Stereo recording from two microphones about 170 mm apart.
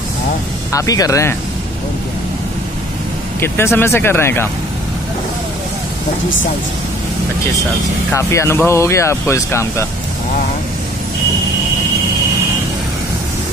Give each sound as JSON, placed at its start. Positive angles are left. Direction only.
{"t": 0.7, "sound": "speech", "side_deg": 20}
{"t": 3.3, "sound": "speech", "side_deg": 15}
{"t": 8.1, "sound": "speech", "side_deg": 15}